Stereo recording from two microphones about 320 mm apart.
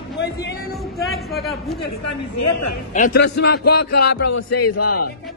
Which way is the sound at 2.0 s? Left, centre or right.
Left.